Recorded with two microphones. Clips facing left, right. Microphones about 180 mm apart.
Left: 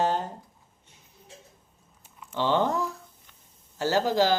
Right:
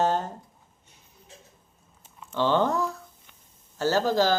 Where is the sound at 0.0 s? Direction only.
45° right (ahead or behind).